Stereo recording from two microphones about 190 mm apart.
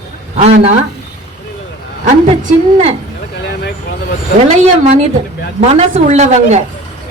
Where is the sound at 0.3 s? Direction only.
40° right (ahead or behind).